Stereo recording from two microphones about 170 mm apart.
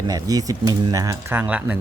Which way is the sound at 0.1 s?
20° right (ahead or behind).